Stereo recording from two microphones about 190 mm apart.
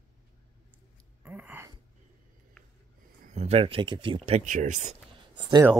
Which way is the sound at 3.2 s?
35° right (ahead or behind).